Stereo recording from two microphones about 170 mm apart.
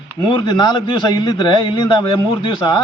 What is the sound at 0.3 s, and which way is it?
A man's voice, 25° left (ahead or behind).